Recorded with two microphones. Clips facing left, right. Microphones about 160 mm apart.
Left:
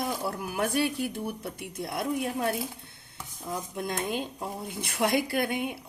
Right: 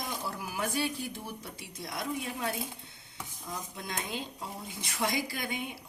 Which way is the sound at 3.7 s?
55° left (ahead or behind).